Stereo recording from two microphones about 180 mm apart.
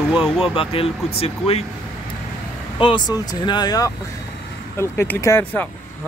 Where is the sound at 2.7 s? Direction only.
25° left (ahead or behind).